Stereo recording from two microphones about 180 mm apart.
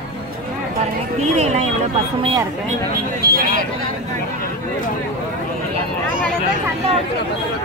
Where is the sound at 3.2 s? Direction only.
55° right (ahead or behind).